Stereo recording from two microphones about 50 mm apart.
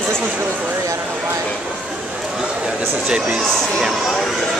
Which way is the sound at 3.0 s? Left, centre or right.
Centre.